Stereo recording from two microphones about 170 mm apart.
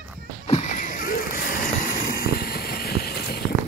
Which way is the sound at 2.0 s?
60° left (ahead or behind).